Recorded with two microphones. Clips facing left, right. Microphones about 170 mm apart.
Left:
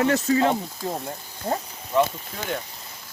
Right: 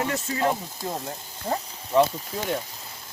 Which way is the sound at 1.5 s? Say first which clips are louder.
Left 1 dB; 10° left (ahead or behind).